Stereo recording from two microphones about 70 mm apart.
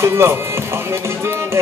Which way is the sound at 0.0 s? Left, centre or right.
Right.